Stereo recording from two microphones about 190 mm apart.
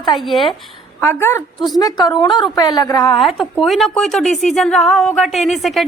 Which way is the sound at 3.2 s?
Centre (ahead or behind).